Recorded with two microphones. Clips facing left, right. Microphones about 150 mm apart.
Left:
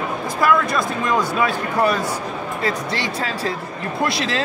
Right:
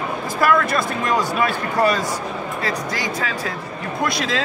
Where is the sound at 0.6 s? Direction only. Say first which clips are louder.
Even; 20° left (ahead or behind).